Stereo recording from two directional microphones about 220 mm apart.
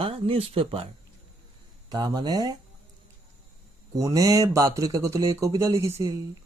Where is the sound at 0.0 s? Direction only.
25° right (ahead or behind).